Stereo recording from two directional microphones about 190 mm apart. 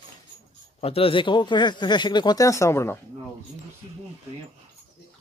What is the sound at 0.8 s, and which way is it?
Speech, 30° left (ahead or behind).